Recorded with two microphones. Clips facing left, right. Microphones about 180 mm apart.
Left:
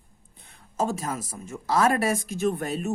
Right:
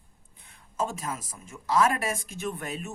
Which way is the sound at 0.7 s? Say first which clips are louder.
Left 4 dB; 40° left (ahead or behind).